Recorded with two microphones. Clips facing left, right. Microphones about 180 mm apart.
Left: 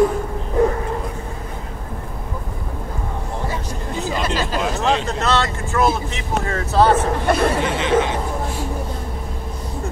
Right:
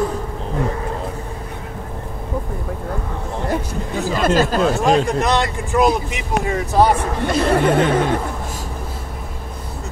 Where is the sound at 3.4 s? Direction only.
55° right (ahead or behind).